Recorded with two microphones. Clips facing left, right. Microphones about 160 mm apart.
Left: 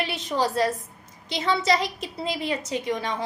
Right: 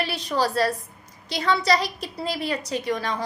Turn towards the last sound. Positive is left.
turn(degrees=20)  # may be behind; listen again after turning